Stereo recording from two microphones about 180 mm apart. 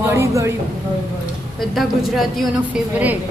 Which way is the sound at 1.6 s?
Centre (ahead or behind).